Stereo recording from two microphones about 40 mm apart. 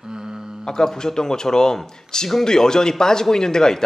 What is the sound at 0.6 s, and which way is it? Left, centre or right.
Speech, centre.